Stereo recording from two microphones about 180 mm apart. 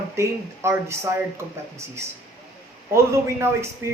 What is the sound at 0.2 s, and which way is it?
A woman's voice, 15° right (ahead or behind).